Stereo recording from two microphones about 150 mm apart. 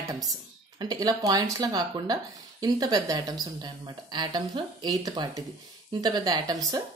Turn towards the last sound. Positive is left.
turn(degrees=-25)  # may be behind; listen again after turning